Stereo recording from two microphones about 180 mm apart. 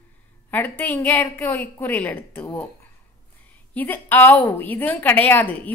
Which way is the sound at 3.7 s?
10° left (ahead or behind).